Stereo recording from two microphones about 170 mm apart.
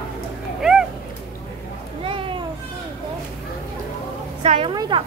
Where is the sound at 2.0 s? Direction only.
30° right (ahead or behind).